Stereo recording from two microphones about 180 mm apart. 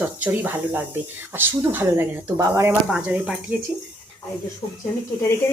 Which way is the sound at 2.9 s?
5° right (ahead or behind).